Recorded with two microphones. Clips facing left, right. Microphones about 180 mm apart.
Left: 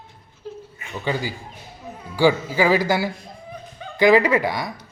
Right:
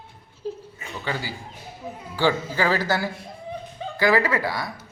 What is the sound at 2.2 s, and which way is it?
A man's voice, 10° left (ahead or behind).